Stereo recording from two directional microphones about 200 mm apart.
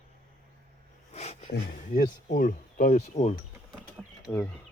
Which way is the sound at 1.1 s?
35° left (ahead or behind).